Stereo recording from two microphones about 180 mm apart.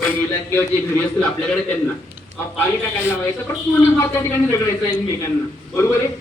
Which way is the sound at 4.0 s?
10° left (ahead or behind).